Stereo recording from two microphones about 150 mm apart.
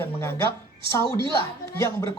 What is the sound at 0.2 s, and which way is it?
A woman's voice, 20° left (ahead or behind).